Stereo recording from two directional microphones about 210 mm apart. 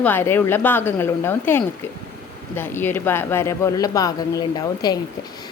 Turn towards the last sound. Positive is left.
turn(degrees=20)  # may be behind; listen again after turning